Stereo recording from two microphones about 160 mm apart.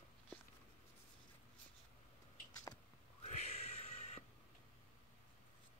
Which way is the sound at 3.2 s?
40° left (ahead or behind).